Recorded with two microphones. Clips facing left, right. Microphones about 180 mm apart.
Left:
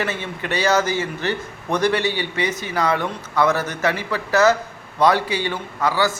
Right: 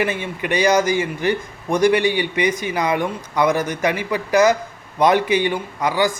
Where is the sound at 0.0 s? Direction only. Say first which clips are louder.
Right 3 dB; 15° right (ahead or behind).